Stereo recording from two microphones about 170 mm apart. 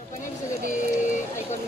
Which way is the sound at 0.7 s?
45° left (ahead or behind).